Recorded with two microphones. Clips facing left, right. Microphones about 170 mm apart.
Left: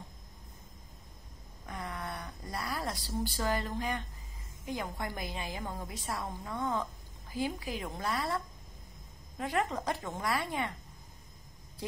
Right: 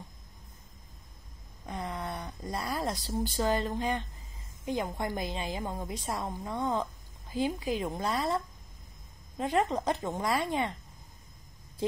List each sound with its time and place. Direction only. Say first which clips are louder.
1.7 s a sound: right 4 dB; 20° right (ahead or behind)
4.6 s a woman's voice: right 5 dB; 25° right (ahead or behind)
9.4 s a woman's voice: right 4 dB; 25° right (ahead or behind)